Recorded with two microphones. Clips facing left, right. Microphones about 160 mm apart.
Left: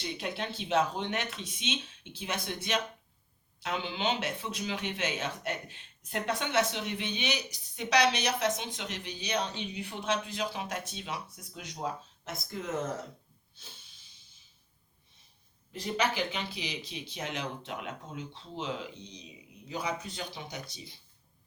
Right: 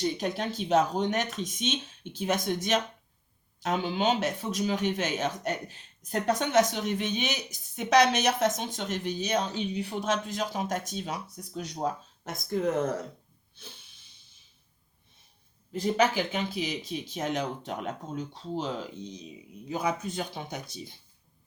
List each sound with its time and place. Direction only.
0.0 s speech: 40° right (ahead or behind)
16.1 s speech: 45° right (ahead or behind)